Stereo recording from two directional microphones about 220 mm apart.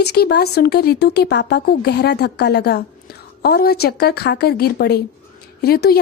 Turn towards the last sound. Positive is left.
turn(degrees=45)  # may be behind; listen again after turning